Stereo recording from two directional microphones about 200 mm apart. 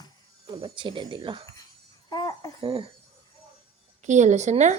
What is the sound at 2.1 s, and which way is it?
Jingle bell, 20° left (ahead or behind).